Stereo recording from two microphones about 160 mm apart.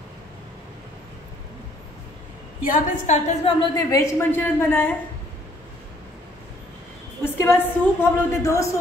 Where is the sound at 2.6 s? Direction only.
55° left (ahead or behind).